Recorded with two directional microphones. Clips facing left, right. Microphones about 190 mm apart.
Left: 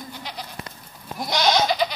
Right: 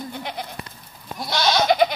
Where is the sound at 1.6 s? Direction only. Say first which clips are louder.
Right 5 dB; 55° right (ahead or behind).